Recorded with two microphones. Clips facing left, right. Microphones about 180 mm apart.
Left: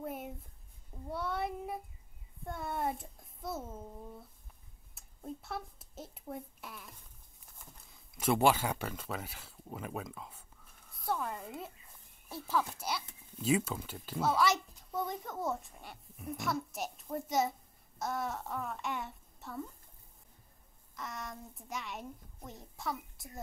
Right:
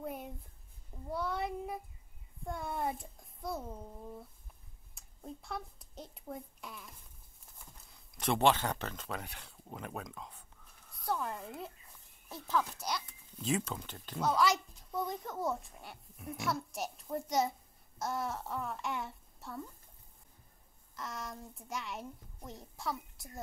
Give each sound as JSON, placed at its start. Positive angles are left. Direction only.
{"t": 0.0, "sound": "a sound", "side_deg": 0}
{"t": 1.0, "sound": "a woman's voice", "side_deg": 0}
{"t": 4.9, "sound": "speech", "side_deg": 0}
{"t": 7.9, "sound": "speech", "side_deg": 5}
{"t": 10.9, "sound": "a sound", "side_deg": 0}
{"t": 12.3, "sound": "a child's voice", "side_deg": 5}
{"t": 20.9, "sound": "a woman's voice", "side_deg": 0}